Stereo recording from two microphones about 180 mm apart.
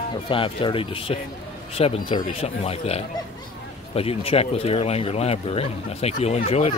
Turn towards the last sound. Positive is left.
turn(degrees=35)  # may be behind; listen again after turning